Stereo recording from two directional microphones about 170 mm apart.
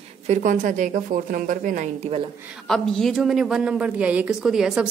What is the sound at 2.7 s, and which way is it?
A woman's voice, centre (ahead or behind).